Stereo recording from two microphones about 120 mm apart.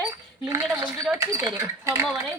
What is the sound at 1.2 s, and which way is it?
Speech, 30° right (ahead or behind).